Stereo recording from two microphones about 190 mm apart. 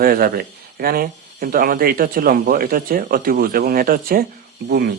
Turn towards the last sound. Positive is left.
turn(degrees=-60)  # may be behind; listen again after turning